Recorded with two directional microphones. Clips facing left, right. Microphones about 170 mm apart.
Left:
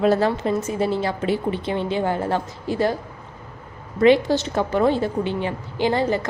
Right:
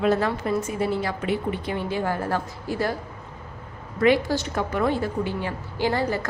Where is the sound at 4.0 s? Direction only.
25° left (ahead or behind).